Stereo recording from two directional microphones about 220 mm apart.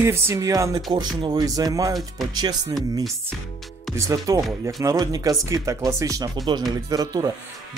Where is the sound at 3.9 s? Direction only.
15° right (ahead or behind).